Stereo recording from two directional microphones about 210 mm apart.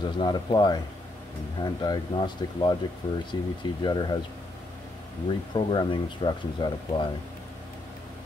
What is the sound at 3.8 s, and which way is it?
Speech, 20° left (ahead or behind).